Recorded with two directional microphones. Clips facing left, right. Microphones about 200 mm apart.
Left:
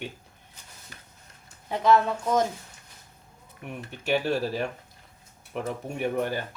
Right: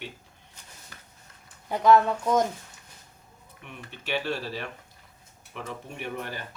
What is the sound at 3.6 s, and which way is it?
Speech, 45° left (ahead or behind).